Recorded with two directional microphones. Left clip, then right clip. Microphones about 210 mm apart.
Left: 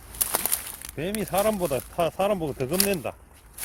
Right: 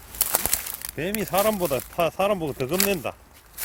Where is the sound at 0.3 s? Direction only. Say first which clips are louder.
Right 2 dB; 5° right (ahead or behind).